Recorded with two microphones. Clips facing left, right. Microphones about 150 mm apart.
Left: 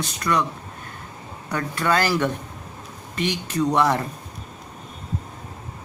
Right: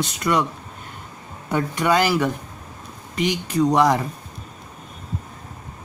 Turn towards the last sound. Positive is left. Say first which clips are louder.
# right 3 dB
turn(degrees=-10)  # may be behind; listen again after turning